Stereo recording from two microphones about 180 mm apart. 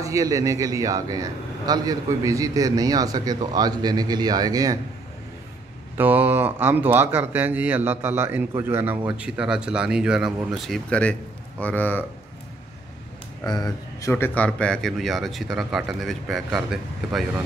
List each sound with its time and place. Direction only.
0.0 s a man's voice: 20° right (ahead or behind)
5.9 s a man's voice: 10° right (ahead or behind); by 12.0 s 10° left (ahead or behind)
13.4 s speech: 20° left (ahead or behind); by 17.2 s centre (ahead or behind)